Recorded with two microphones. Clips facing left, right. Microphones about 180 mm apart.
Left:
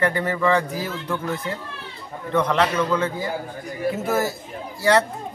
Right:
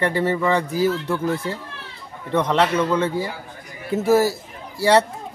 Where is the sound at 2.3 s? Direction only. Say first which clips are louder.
Right 1 dB; 25° right (ahead or behind).